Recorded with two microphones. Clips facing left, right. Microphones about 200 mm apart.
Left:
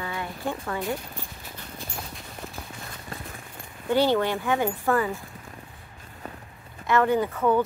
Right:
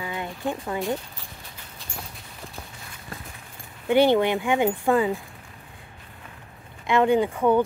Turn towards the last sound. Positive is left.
turn(degrees=-15)  # may be behind; listen again after turning